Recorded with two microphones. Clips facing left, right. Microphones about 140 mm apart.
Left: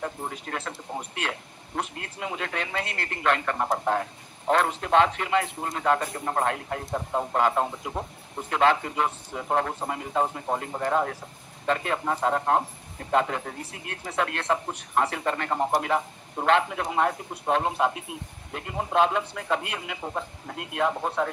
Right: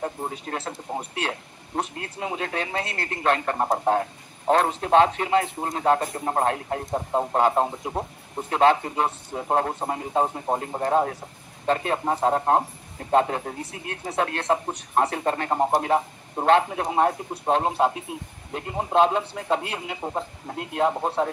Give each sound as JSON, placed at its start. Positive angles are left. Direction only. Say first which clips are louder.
{"t": 0.0, "sound": "a man's voice", "louder": "right 3 dB", "side_deg": -30}